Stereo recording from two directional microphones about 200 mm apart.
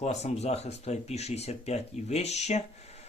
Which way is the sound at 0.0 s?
35° left (ahead or behind).